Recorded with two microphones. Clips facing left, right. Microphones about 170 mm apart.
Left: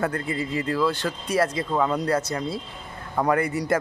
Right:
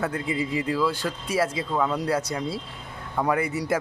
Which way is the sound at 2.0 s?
10° right (ahead or behind).